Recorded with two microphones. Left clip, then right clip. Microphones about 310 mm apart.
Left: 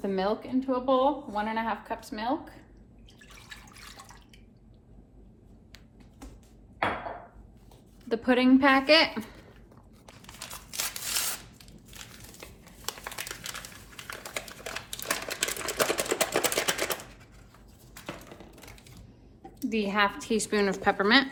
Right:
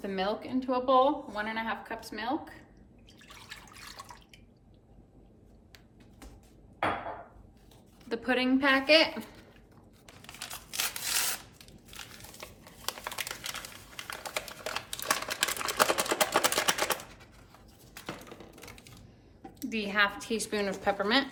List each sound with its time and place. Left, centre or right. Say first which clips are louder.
0.0 s a woman's voice: left 3 dB; centre
3.7 s drip: right 1 dB; centre
8.1 s a woman's voice: left 5 dB; centre
10.2 s scissors: right 1 dB; centre
11.9 s crumpling: right 1 dB; centre
18.0 s a sound: left 1 dB; centre
19.5 s a woman's voice: left 2 dB; centre